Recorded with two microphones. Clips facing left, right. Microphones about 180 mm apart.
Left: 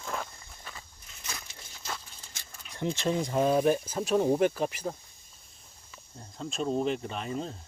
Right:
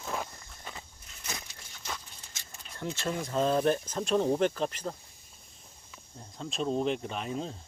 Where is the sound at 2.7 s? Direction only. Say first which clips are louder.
Left 5 dB; 15° left (ahead or behind).